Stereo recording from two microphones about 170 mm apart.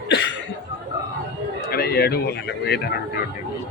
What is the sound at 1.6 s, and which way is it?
Speech, 65° left (ahead or behind).